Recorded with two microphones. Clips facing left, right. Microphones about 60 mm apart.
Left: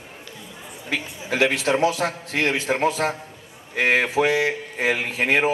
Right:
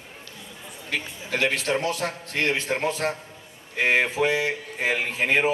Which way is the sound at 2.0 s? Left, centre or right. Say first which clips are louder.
Left 4 dB; left.